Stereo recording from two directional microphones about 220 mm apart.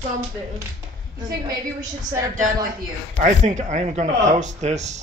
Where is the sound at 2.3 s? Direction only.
35° right (ahead or behind).